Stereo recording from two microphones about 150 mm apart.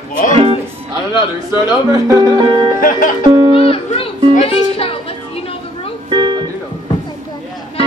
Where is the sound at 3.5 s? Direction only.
40° left (ahead or behind).